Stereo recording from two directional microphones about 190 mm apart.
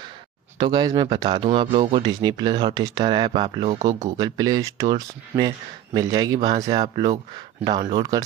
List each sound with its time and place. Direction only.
0.6 s speech: 25° right (ahead or behind)
3.6 s speech: 35° right (ahead or behind)
4.2 s speech: 20° right (ahead or behind)